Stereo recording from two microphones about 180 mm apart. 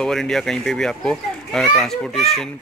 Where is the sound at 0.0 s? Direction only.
Centre (ahead or behind).